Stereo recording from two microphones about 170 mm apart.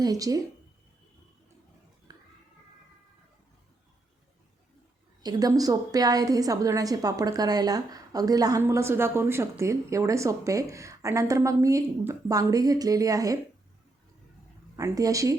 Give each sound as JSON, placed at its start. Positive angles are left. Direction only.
{"t": 0.0, "sound": "a woman's voice", "side_deg": -20}
{"t": 2.1, "sound": "a sound", "side_deg": -20}
{"t": 5.2, "sound": "a woman's voice", "side_deg": -20}
{"t": 14.8, "sound": "a woman's voice", "side_deg": -20}